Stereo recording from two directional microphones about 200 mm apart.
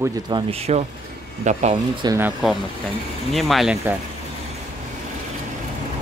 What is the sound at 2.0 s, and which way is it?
Speech, 15° right (ahead or behind).